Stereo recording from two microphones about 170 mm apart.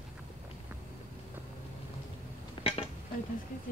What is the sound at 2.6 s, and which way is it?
Dishes, 25° left (ahead or behind).